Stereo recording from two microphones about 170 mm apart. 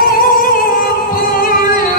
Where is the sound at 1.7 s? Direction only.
55° left (ahead or behind).